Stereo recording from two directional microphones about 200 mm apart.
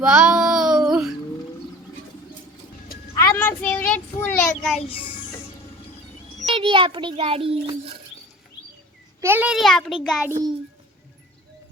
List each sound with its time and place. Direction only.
0.0 s child singing: 5° right (ahead or behind)
3.2 s child singing: 10° left (ahead or behind)
6.5 s a child's voice: 25° right (ahead or behind)
9.2 s a child's voice: 10° right (ahead or behind)